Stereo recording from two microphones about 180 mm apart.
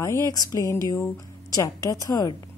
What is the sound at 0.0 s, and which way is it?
A woman's voice, 20° left (ahead or behind).